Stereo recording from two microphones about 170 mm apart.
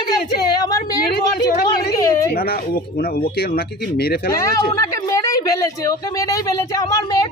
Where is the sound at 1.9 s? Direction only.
20° left (ahead or behind).